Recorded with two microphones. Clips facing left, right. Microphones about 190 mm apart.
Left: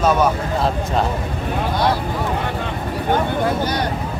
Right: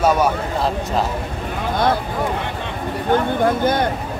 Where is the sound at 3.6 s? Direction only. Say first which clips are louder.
Right 4 dB; 50° right (ahead or behind).